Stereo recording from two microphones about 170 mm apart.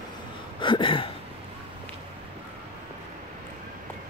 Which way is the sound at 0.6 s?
30° left (ahead or behind).